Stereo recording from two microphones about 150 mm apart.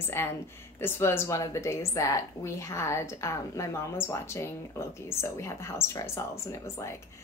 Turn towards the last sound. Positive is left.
turn(degrees=20)  # may be behind; listen again after turning